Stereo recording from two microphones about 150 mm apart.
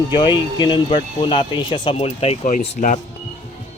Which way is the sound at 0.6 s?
30° left (ahead or behind).